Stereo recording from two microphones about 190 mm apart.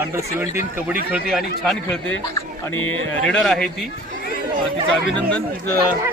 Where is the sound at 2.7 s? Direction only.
90° left.